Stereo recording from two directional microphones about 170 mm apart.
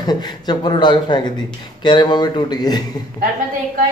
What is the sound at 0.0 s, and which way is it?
A man's voice, 25° left (ahead or behind).